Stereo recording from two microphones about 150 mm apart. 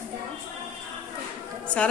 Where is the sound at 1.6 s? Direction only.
5° left (ahead or behind).